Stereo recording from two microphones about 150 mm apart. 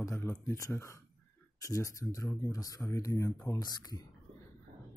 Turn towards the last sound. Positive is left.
turn(degrees=25)  # may be behind; listen again after turning